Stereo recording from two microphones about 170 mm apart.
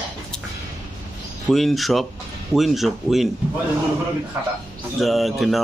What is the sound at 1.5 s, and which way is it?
Speech, centre (ahead or behind).